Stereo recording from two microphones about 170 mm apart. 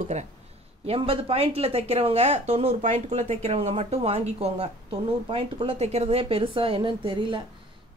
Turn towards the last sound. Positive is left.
turn(degrees=-30)  # may be behind; listen again after turning